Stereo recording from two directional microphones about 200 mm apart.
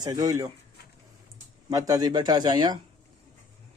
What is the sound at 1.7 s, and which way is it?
Speech, 20° right (ahead or behind).